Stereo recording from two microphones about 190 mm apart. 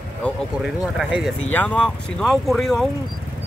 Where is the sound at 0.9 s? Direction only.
Centre (ahead or behind).